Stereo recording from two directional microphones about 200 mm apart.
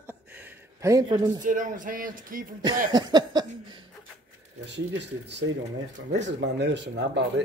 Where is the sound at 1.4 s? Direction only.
40° right (ahead or behind).